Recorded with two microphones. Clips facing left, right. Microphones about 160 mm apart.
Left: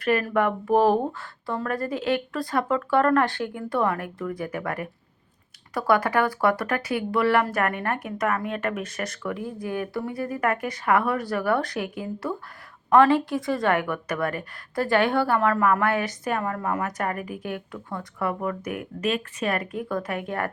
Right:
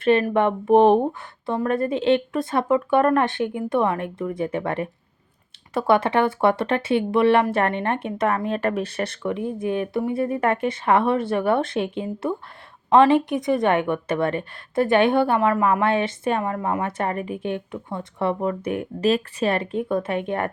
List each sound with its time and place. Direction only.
0.0 s a woman's voice: 25° right (ahead or behind)